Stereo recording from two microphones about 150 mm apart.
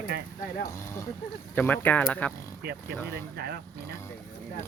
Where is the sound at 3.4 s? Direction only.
90° right.